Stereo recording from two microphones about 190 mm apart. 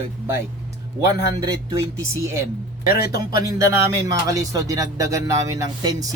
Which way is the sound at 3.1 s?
15° right (ahead or behind).